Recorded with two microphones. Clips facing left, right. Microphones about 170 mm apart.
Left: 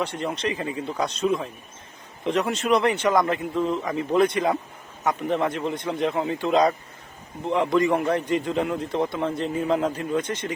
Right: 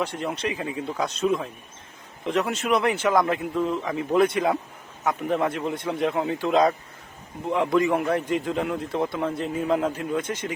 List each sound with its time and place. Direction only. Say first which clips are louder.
0.0 s a man's voice: left 1 dB; 5° right (ahead or behind)